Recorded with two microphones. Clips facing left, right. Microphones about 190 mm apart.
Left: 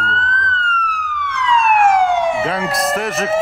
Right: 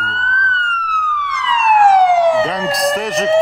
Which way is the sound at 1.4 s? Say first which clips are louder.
Right 1 dB; 35° right (ahead or behind).